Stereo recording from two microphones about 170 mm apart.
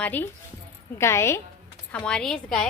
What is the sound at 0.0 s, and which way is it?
A woman's voice, 10° left (ahead or behind).